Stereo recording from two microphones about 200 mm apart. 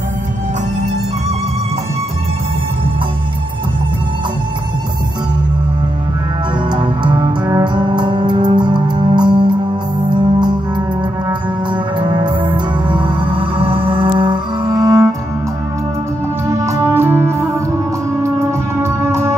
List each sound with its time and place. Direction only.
6.7 s music: 20° right (ahead or behind)
16.5 s music: 15° right (ahead or behind)
18.8 s music: 15° right (ahead or behind)